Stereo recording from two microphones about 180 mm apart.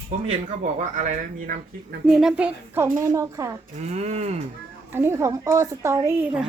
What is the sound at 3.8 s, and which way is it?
Speech, 40° right (ahead or behind).